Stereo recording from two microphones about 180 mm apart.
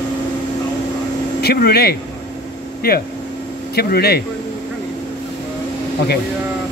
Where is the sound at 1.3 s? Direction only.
60° left (ahead or behind).